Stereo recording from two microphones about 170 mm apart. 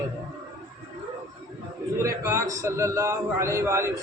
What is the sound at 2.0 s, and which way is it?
A man's voice, 15° right (ahead or behind).